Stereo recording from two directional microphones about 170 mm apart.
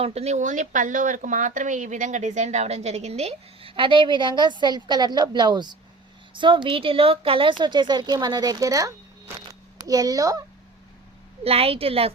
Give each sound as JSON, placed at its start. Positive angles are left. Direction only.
{"t": 0.0, "sound": "speech", "side_deg": -40}
{"t": 9.5, "sound": "a sound", "side_deg": -20}
{"t": 11.4, "sound": "speech", "side_deg": -35}